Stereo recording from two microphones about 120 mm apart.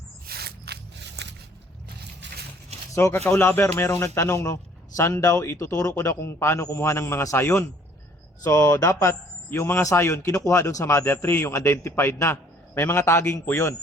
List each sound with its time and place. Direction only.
2.9 s a man's voice: 25° left (ahead or behind)